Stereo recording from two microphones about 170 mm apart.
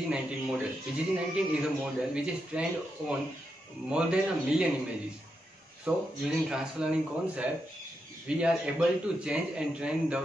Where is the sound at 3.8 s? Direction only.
5° right (ahead or behind).